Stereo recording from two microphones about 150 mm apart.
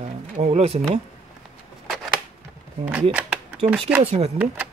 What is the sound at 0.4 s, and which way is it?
Speech, 45° right (ahead or behind).